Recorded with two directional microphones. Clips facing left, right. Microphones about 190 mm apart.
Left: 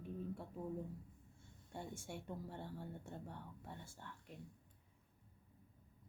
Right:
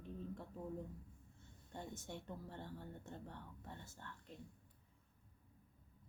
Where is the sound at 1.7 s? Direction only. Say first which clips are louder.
Left 1 dB; 10° left (ahead or behind).